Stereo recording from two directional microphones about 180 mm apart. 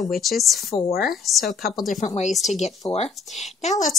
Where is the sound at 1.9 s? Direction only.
40° left (ahead or behind).